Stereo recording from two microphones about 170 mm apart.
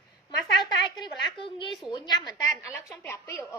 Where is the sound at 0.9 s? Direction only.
30° left (ahead or behind).